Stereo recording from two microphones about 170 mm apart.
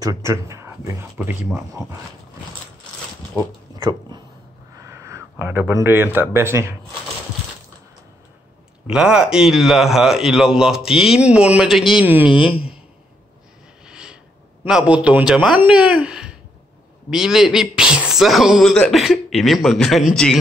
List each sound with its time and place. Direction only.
0.0 s speech: 20° right (ahead or behind)
3.7 s speech: 25° right (ahead or behind)
8.8 s speech: 5° right (ahead or behind)
12.4 s speech: 35° left (ahead or behind)
13.8 s a sound: 5° right (ahead or behind)
14.6 s speech: 5° right (ahead or behind)